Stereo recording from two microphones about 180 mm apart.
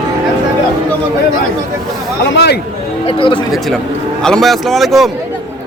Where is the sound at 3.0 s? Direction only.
30° left (ahead or behind).